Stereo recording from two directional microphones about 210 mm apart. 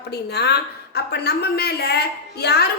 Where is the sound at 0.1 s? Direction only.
50° left (ahead or behind).